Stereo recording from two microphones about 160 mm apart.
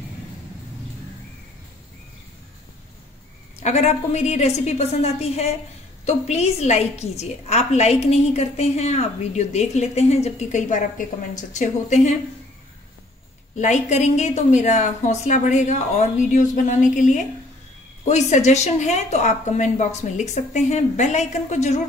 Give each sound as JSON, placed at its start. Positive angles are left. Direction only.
{"t": 3.5, "sound": "a woman's voice", "side_deg": 45}
{"t": 13.6, "sound": "a woman's voice", "side_deg": 45}